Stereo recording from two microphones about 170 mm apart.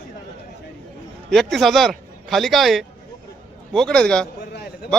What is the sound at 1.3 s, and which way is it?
Speech, centre (ahead or behind).